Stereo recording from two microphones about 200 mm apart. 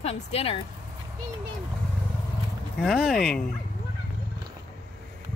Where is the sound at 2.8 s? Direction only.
Centre (ahead or behind).